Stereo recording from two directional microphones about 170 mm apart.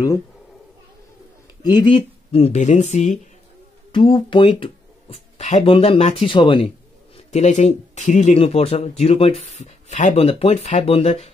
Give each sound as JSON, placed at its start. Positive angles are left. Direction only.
{"t": 1.6, "sound": "speech", "side_deg": 25}
{"t": 3.9, "sound": "speech", "side_deg": 30}
{"t": 7.2, "sound": "speech", "side_deg": 40}